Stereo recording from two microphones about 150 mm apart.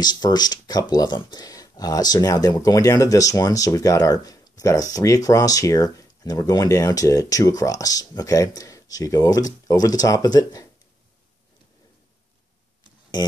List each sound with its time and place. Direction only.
0.0 s speech: 30° left (ahead or behind)